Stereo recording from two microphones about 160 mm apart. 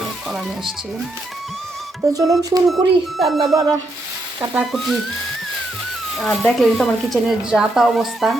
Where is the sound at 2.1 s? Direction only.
20° right (ahead or behind).